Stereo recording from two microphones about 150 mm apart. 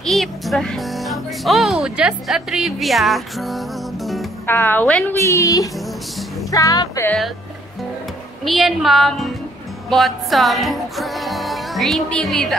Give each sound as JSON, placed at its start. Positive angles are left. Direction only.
{"t": 0.0, "sound": "speech", "side_deg": 0}
{"t": 4.5, "sound": "a woman's voice", "side_deg": 15}
{"t": 5.2, "sound": "speech", "side_deg": 20}
{"t": 8.5, "sound": "speech", "side_deg": 0}